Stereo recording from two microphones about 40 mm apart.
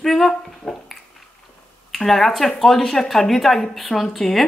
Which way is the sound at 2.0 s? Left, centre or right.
Centre.